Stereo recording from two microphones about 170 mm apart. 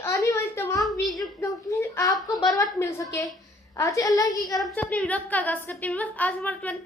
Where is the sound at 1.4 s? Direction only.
20° left (ahead or behind).